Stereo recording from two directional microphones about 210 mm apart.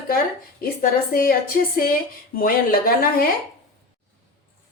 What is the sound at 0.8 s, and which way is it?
A woman's voice, 45° left (ahead or behind).